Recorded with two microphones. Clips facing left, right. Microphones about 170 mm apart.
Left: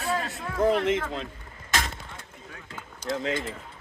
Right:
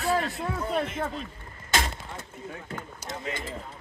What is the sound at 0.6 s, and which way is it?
Speech, 85° left.